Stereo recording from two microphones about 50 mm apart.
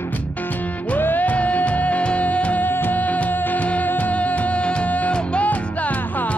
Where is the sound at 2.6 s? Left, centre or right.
Left.